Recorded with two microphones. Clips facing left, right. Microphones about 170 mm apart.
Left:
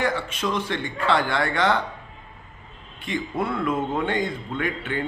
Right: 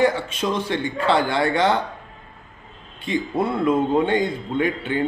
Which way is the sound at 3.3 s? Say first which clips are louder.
Right 5 dB; 30° right (ahead or behind).